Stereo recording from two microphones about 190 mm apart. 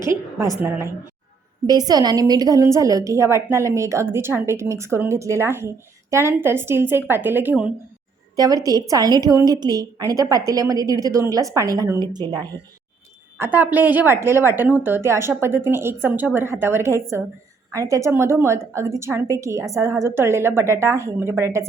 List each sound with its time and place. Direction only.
0.0 s a woman's voice: 15° right (ahead or behind)
8.4 s a woman's voice: 20° right (ahead or behind)
13.4 s a woman's voice: 10° right (ahead or behind)